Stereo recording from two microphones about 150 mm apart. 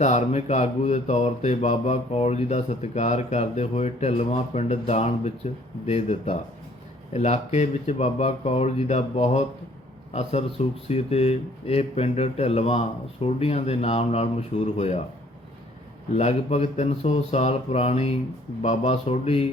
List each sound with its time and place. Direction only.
0.0 s mantra: 50° left (ahead or behind)
16.1 s mantra: 45° left (ahead or behind)